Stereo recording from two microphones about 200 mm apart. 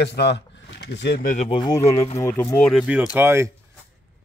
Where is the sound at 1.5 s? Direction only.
20° left (ahead or behind); by 3.1 s centre (ahead or behind).